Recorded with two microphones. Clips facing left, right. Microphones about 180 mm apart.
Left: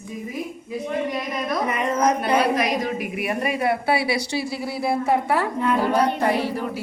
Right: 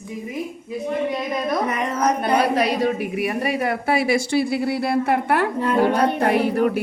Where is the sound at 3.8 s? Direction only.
45° right (ahead or behind).